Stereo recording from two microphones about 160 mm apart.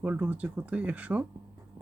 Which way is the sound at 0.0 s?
10° right (ahead or behind).